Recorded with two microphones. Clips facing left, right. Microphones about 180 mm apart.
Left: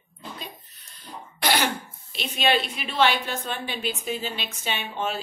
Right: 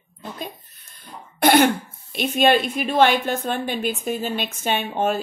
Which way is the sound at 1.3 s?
55° right (ahead or behind).